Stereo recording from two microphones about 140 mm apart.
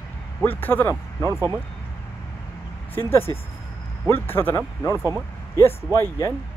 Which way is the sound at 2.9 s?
15° left (ahead or behind).